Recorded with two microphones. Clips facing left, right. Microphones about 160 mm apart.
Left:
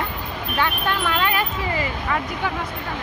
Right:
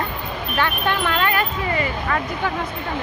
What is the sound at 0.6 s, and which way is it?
Speech, 5° left (ahead or behind).